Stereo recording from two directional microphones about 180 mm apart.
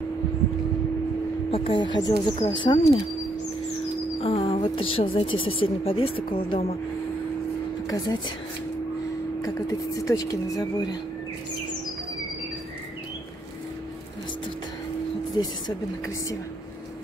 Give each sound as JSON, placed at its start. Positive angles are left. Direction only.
{"t": 1.5, "sound": "a woman's voice", "side_deg": 30}
{"t": 4.2, "sound": "a sound", "side_deg": 35}
{"t": 4.7, "sound": "a woman's voice", "side_deg": 30}
{"t": 7.9, "sound": "a woman's voice", "side_deg": 20}
{"t": 9.4, "sound": "a woman's voice", "side_deg": 20}
{"t": 15.4, "sound": "a woman's voice", "side_deg": 25}